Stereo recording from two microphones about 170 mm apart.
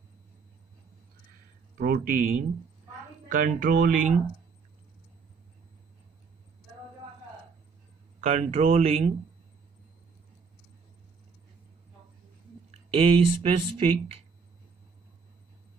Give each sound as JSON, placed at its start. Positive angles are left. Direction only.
{"t": 1.8, "sound": "speech", "side_deg": -60}
{"t": 8.2, "sound": "speech", "side_deg": -40}
{"t": 12.9, "sound": "speech", "side_deg": -35}